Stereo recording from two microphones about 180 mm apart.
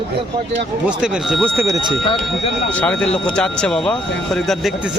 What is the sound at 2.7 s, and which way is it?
A man's voice, 5° left (ahead or behind).